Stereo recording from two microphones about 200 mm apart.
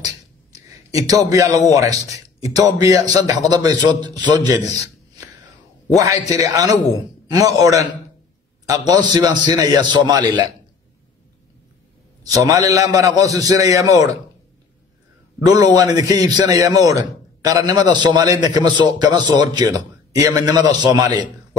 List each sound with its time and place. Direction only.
0.0 s a sound: 20° right (ahead or behind)
1.7 s a man's voice: 15° right (ahead or behind)
5.9 s a man's voice: 20° right (ahead or behind)
12.3 s a man's voice: 15° right (ahead or behind)
15.4 s a man's voice: 20° right (ahead or behind)